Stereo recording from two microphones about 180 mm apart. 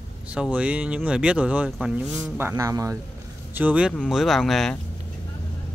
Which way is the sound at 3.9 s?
5° left (ahead or behind).